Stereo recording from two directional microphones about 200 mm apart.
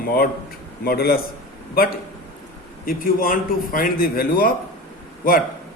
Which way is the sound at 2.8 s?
45° left (ahead or behind).